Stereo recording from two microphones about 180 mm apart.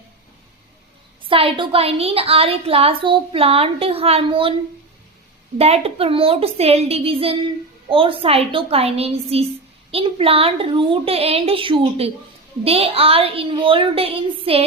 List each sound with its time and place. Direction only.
1.2 s a woman's voice: 30° right (ahead or behind)
5.5 s a woman's voice: 35° right (ahead or behind)